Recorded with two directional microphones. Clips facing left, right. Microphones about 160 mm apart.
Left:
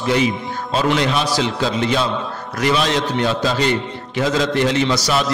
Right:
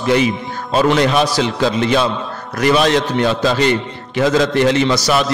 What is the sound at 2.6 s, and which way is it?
A man's voice, 55° right (ahead or behind).